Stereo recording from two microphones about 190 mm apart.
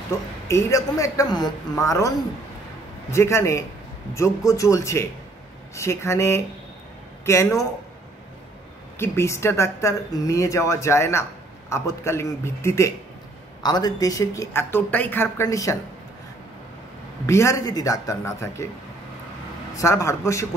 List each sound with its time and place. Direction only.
0.5 s speech: 15° left (ahead or behind)
8.9 s speech: 15° left (ahead or behind)
17.3 s speech: 15° left (ahead or behind)
19.8 s speech: 15° left (ahead or behind)